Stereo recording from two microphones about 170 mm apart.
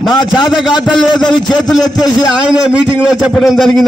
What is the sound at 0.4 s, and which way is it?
Speech, 5° right (ahead or behind).